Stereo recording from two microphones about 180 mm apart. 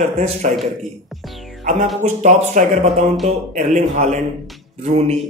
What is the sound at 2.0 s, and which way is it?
A man's voice, 40° right (ahead or behind).